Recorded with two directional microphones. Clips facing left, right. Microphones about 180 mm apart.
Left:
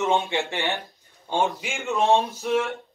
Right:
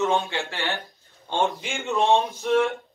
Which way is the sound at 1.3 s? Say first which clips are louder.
Even; 5° left (ahead or behind).